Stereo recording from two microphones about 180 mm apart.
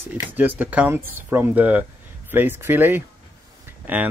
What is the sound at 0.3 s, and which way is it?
Speech, 10° right (ahead or behind).